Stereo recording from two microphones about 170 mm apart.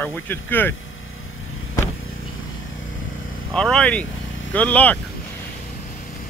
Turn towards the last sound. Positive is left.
turn(degrees=10)  # may be behind; listen again after turning